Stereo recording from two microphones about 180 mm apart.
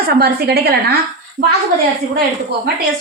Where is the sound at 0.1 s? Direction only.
60° right (ahead or behind).